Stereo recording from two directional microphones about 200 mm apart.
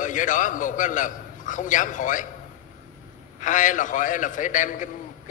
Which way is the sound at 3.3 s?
40° left (ahead or behind).